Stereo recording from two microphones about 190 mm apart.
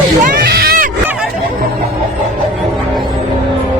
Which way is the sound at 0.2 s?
50° right (ahead or behind).